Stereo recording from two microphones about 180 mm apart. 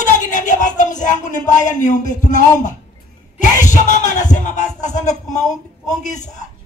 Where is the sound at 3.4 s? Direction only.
45° left (ahead or behind).